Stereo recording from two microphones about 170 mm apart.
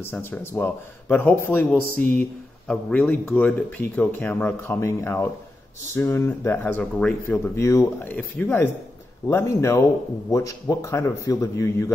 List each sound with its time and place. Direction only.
0.0 s speech: 10° left (ahead or behind)
7.5 s speech: 15° left (ahead or behind)